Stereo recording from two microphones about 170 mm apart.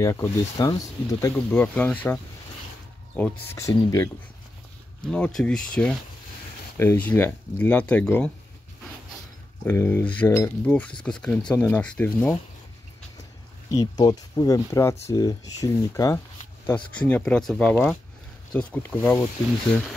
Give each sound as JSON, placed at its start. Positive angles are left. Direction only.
{"t": 0.0, "sound": "speech", "side_deg": 20}
{"t": 3.2, "sound": "speech", "side_deg": 20}
{"t": 5.0, "sound": "speech", "side_deg": 5}
{"t": 9.7, "sound": "speech", "side_deg": 10}
{"t": 13.7, "sound": "speech", "side_deg": 20}
{"t": 16.6, "sound": "speech", "side_deg": 10}